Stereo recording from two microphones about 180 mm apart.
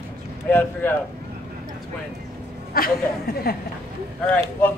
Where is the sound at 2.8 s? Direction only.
55° left (ahead or behind).